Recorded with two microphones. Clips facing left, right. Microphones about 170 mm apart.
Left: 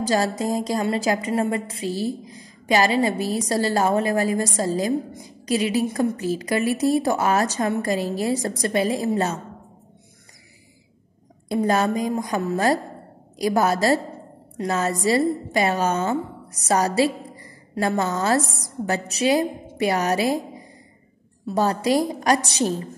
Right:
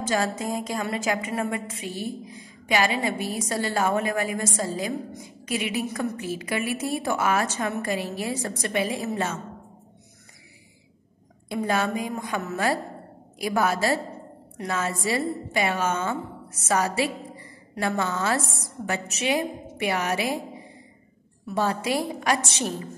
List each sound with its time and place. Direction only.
0.0 s a woman's voice: 35° left (ahead or behind)
11.4 s a woman's voice: 40° left (ahead or behind)